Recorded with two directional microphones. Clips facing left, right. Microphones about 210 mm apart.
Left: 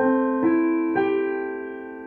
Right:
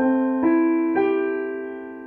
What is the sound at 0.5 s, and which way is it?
Keyboard, 45° left (ahead or behind).